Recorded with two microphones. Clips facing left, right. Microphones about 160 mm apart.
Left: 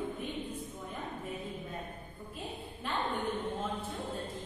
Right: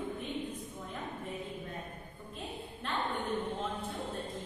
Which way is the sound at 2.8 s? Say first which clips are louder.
Left 1 dB; 5° left (ahead or behind).